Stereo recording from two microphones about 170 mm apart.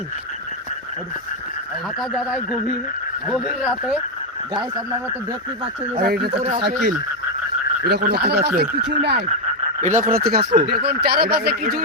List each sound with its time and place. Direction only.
2.0 s speech: centre (ahead or behind)
6.0 s speech: 65° right (ahead or behind)
10.0 s speech: 60° right (ahead or behind)